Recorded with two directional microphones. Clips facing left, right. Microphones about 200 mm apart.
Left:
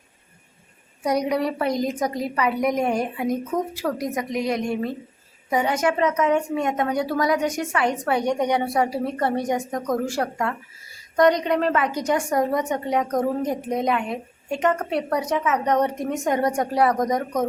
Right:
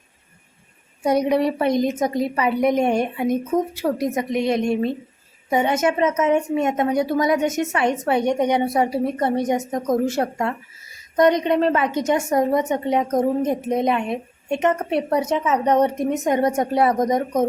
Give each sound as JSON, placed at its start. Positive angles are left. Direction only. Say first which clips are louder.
{"t": 1.0, "sound": "a woman's voice", "louder": "right 4 dB", "side_deg": -25}